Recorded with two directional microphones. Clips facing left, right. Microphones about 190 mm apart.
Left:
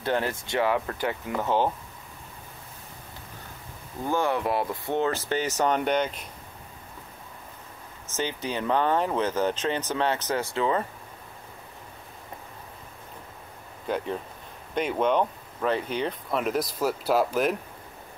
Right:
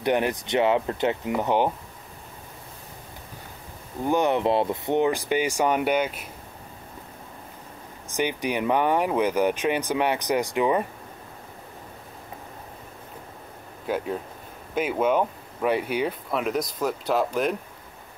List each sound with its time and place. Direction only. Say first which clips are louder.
0.0 s speech: right 4 dB; 15° right (ahead or behind)
4.0 s speech: right 4 dB; 20° right (ahead or behind)
8.1 s speech: right 4 dB; 15° right (ahead or behind)
13.8 s speech: right 2 dB; 5° right (ahead or behind)